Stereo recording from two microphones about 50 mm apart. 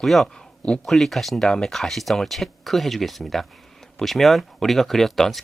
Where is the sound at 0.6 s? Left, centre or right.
Left.